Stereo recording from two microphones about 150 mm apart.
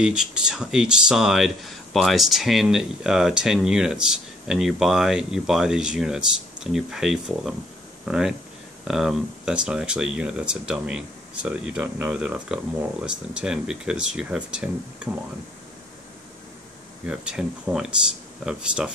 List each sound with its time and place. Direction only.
0.0 s speech: 5° right (ahead or behind)
17.0 s speech: 5° right (ahead or behind)